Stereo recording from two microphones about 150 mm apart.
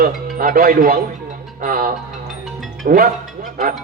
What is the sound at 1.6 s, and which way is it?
Speech, 75° right (ahead or behind).